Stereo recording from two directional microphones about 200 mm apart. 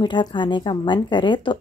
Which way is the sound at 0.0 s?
20° left (ahead or behind).